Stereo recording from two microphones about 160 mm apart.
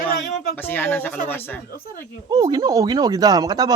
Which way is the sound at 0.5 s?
10° left (ahead or behind).